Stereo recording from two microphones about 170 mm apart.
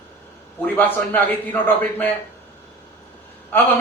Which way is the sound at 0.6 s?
10° left (ahead or behind).